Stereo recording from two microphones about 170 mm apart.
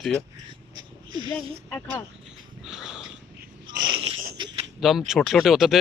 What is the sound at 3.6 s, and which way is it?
Wheeze, 25° right (ahead or behind).